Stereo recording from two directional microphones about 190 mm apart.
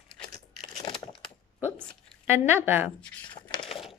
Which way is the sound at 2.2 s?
10° right (ahead or behind).